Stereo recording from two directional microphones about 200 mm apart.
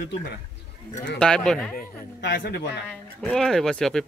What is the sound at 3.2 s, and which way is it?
Speech, centre (ahead or behind).